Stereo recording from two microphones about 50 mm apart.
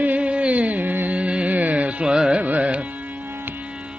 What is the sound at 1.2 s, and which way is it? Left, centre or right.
Music, right.